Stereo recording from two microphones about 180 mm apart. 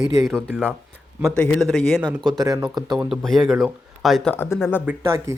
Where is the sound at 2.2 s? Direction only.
20° right (ahead or behind).